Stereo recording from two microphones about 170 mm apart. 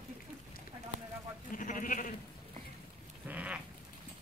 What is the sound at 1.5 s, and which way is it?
Sheep, 50° left (ahead or behind).